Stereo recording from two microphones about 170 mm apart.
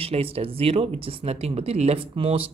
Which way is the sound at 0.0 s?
35° right (ahead or behind).